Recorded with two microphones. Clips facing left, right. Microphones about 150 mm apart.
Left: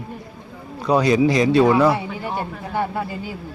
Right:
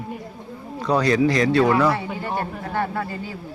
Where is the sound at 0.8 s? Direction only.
15° left (ahead or behind).